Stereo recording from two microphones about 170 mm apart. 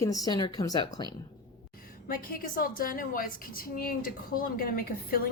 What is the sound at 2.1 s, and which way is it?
A woman's voice, 55° left (ahead or behind).